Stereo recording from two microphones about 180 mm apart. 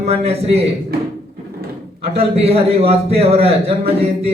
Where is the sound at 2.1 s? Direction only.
35° right (ahead or behind).